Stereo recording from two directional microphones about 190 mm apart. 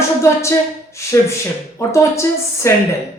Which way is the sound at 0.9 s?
15° left (ahead or behind).